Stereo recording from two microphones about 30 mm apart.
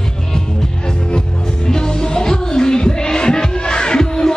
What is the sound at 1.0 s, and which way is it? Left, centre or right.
Music, left.